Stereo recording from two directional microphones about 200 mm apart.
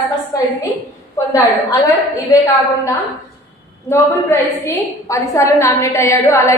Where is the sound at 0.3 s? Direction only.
20° left (ahead or behind).